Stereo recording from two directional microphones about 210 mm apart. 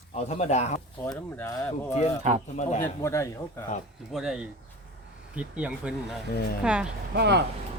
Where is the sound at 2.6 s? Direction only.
35° left (ahead or behind).